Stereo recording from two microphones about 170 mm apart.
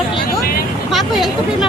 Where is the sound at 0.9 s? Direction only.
Centre (ahead or behind).